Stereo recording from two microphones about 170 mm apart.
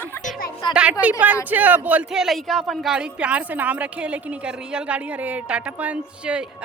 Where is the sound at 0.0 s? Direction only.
10° left (ahead or behind).